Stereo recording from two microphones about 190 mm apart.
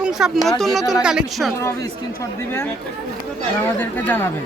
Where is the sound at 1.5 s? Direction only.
15° left (ahead or behind).